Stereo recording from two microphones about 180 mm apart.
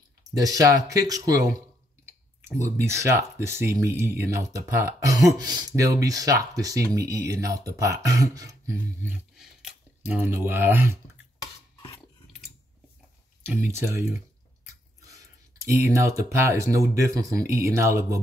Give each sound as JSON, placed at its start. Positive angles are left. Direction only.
{"t": 0.4, "sound": "speech", "side_deg": -20}
{"t": 9.4, "sound": "speech", "side_deg": 0}
{"t": 13.4, "sound": "speech", "side_deg": -10}
{"t": 15.0, "sound": "clicking", "side_deg": -15}
{"t": 16.3, "sound": "speech", "side_deg": -15}